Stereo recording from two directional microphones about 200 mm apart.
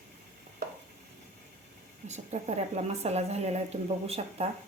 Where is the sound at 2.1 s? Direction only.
35° right (ahead or behind).